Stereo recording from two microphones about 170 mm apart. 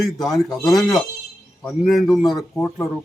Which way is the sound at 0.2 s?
Centre (ahead or behind).